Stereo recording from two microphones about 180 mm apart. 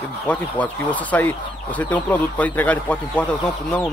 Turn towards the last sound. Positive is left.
turn(degrees=5)  # may be behind; listen again after turning